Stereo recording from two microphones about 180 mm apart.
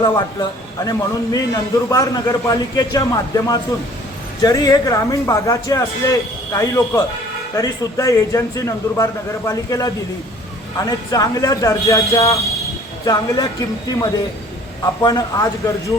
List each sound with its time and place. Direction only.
0.0 s a man's voice: 20° left (ahead or behind)
15.0 s a man's voice: 20° left (ahead or behind)